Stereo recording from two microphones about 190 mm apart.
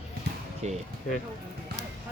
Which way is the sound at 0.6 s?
35° right (ahead or behind).